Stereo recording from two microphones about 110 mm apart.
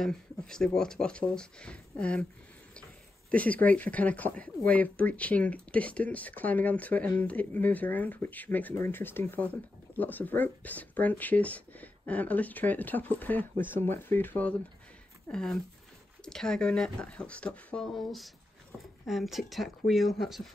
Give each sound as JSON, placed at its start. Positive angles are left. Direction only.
{"t": 0.0, "sound": "speech", "side_deg": 5}
{"t": 3.3, "sound": "speech", "side_deg": 15}
{"t": 16.3, "sound": "speech", "side_deg": 5}